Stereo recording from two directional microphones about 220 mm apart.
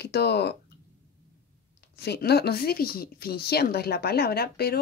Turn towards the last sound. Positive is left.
turn(degrees=45)  # may be behind; listen again after turning